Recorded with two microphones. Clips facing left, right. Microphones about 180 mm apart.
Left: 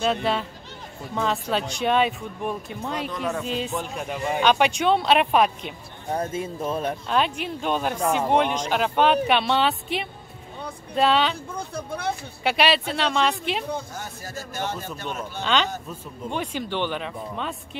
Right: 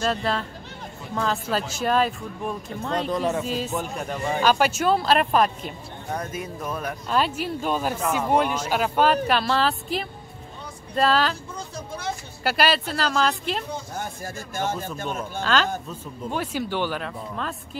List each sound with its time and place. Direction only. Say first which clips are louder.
0.0 s speech: left 1 dB; centre (ahead or behind)
3.0 s speech: right 5 dB; 35° right (ahead or behind)
3.4 s speech: right 1 dB; 5° right (ahead or behind)
6.1 s speech: left 4 dB; 25° left (ahead or behind)
7.1 s speech: right 3 dB; 5° right (ahead or behind)
11.5 s a sound: left 3 dB; 60° left (ahead or behind)
12.4 s speech: left 1 dB; centre (ahead or behind)
13.9 s a man's voice: right 3 dB; 50° right (ahead or behind)
15.4 s speech: right 1 dB; centre (ahead or behind)